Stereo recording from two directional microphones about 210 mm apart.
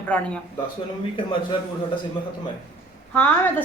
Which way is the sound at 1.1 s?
25° left (ahead or behind).